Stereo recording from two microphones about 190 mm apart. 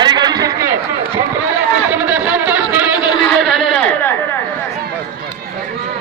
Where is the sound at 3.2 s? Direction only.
Centre (ahead or behind).